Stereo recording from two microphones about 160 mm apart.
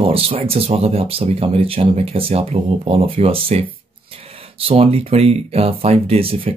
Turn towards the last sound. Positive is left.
turn(degrees=-35)  # may be behind; listen again after turning